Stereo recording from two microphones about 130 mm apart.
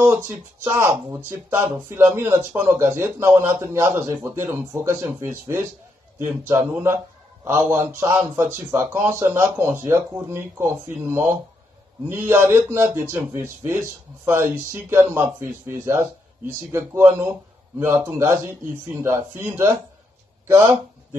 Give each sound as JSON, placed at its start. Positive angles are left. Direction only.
{"t": 0.0, "sound": "speech", "side_deg": -20}